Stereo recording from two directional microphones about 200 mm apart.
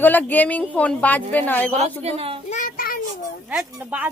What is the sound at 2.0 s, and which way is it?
Speech, 30° right (ahead or behind).